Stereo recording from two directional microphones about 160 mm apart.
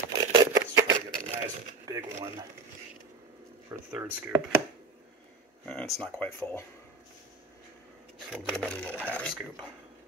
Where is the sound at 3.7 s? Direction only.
10° right (ahead or behind).